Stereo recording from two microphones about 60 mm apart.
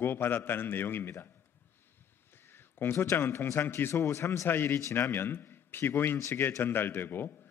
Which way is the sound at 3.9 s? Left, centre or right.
Left.